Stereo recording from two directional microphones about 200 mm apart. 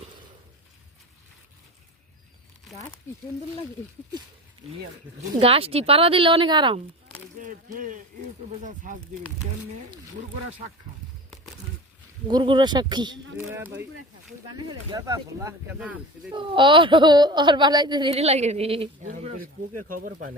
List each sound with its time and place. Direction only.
5.4 s speech: 30° right (ahead or behind)
7.3 s speech: 40° right (ahead or behind)
12.3 s speech: 25° right (ahead or behind)
15.8 s speech: 5° right (ahead or behind)
16.3 s speech: 25° right (ahead or behind)
18.1 s speech: 30° right (ahead or behind)
19.0 s speech: 40° right (ahead or behind)